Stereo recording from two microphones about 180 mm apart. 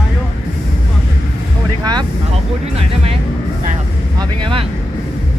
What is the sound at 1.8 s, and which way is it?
Wind noise, 25° right (ahead or behind).